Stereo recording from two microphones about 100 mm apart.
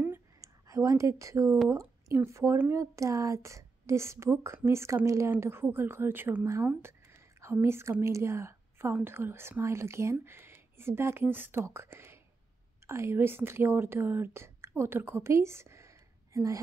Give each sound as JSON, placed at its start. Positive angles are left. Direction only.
{"t": 0.4, "sound": "a woman's voice", "side_deg": -30}